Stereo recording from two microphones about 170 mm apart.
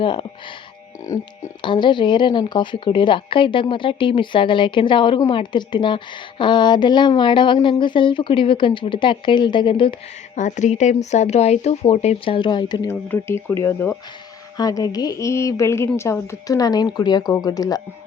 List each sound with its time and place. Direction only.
0.0 s speech: 30° left (ahead or behind)
1.6 s speech: 25° left (ahead or behind)
10.3 s speech: 45° left (ahead or behind); by 12.9 s 25° left (ahead or behind)
12.9 s speech: 15° left (ahead or behind)